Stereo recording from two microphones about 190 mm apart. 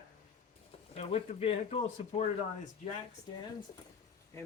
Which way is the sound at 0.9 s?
30° left (ahead or behind).